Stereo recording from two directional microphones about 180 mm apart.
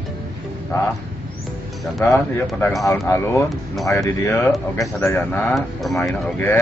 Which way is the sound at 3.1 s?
15° left (ahead or behind).